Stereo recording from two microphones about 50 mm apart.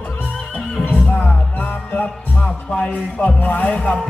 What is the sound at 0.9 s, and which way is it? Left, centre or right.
Music, left.